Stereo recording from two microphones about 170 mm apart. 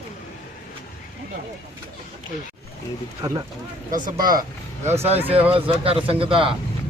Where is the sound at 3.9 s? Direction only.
55° right (ahead or behind).